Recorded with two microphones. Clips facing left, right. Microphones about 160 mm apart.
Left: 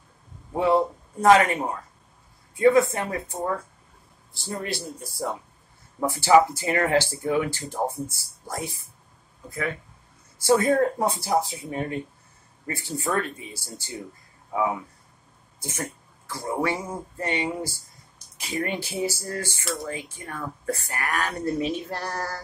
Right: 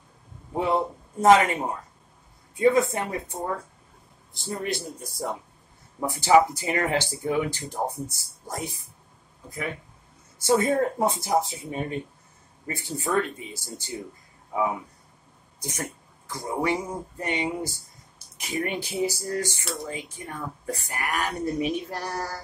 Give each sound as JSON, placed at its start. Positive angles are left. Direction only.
{"t": 0.6, "sound": "a man's voice", "side_deg": -20}
{"t": 4.3, "sound": "speech", "side_deg": -20}
{"t": 10.4, "sound": "speech", "side_deg": -20}
{"t": 15.6, "sound": "speech", "side_deg": -20}